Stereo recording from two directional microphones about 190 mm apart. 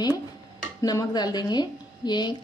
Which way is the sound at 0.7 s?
20° left (ahead or behind).